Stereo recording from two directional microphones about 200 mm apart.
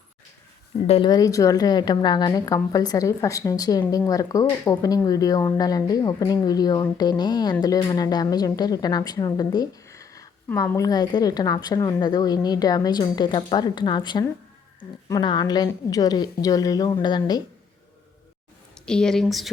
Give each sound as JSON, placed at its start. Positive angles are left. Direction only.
{"t": 0.9, "sound": "a woman's voice", "side_deg": 25}
{"t": 18.9, "sound": "speech", "side_deg": 5}